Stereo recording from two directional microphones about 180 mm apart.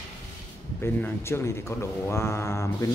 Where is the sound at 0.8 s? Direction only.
15° left (ahead or behind).